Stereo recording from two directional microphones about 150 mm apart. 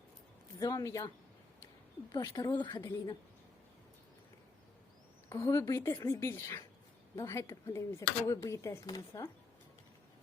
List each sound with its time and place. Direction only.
0.6 s speech: 25° left (ahead or behind)
2.1 s speech: 25° left (ahead or behind)
5.3 s a woman's voice: 20° left (ahead or behind)